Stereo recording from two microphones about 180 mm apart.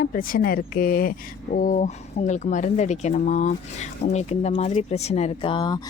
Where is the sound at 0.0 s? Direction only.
50° left (ahead or behind).